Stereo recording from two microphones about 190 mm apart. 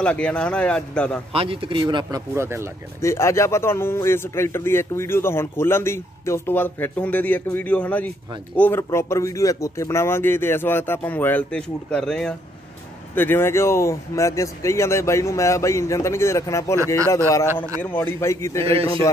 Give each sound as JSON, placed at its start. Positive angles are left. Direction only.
{"t": 0.0, "sound": "speech", "side_deg": 5}
{"t": 1.3, "sound": "speech", "side_deg": -30}
{"t": 3.0, "sound": "speech", "side_deg": 15}